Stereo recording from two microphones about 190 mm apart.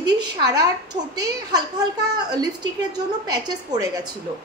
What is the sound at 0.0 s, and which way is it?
A woman's voice, 20° right (ahead or behind).